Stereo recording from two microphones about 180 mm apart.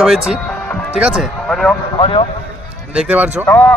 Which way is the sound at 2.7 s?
5° right (ahead or behind).